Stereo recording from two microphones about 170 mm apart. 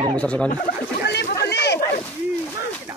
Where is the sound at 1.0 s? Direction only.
75° left (ahead or behind).